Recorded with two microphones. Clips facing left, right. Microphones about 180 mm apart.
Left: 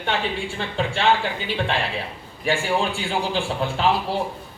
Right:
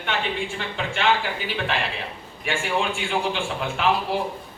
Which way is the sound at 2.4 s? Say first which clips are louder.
Left 3 dB; 35° left (ahead or behind).